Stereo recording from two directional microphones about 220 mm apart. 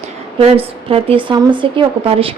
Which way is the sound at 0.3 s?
25° right (ahead or behind).